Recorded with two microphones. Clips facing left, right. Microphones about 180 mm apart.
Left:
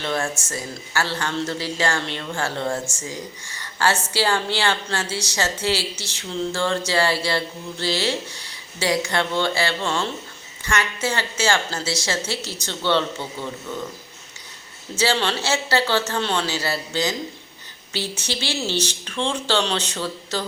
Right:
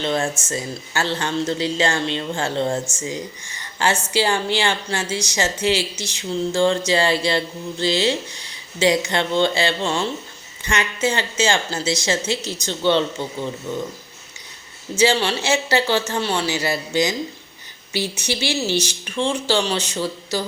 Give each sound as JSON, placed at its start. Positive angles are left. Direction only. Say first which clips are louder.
{"t": 0.0, "sound": "a woman's voice", "louder": "right 3 dB", "side_deg": -20}
{"t": 14.9, "sound": "a woman's voice", "louder": "right 4 dB", "side_deg": -15}